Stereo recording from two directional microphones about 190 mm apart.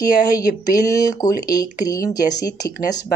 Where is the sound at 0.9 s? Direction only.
20° left (ahead or behind).